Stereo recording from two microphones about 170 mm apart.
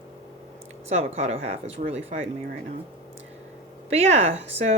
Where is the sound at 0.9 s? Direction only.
40° right (ahead or behind).